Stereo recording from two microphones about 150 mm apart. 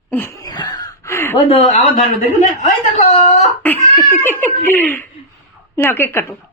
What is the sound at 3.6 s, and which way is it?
Laughter, 10° left (ahead or behind).